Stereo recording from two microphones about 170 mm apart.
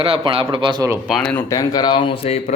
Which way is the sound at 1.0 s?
Centre (ahead or behind).